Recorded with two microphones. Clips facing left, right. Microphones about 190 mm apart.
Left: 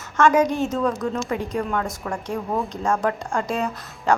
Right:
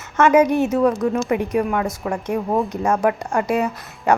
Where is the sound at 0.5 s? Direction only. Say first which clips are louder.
Right 5 dB; 20° right (ahead or behind).